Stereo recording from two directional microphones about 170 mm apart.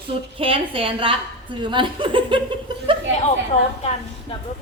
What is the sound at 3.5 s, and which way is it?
Speech, 40° left (ahead or behind).